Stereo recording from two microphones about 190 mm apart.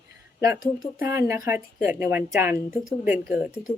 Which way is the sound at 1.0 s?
15° right (ahead or behind).